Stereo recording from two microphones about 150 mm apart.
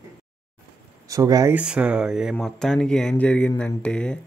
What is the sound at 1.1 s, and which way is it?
Speech, 25° right (ahead or behind).